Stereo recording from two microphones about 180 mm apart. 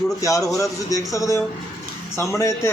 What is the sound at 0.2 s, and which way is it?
A man's voice, 20° left (ahead or behind).